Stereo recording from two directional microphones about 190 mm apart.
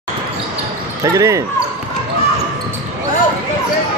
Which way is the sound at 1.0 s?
15° right (ahead or behind).